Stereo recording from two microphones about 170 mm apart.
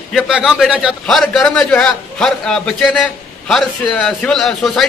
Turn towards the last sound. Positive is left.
turn(degrees=0)  # may be behind; listen again after turning